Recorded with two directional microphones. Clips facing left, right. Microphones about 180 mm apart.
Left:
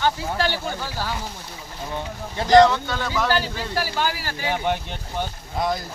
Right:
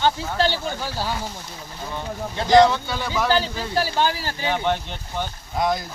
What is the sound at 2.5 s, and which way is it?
Speech, 10° right (ahead or behind).